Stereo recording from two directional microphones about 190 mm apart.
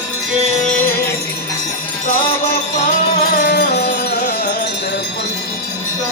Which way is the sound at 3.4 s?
60° left (ahead or behind).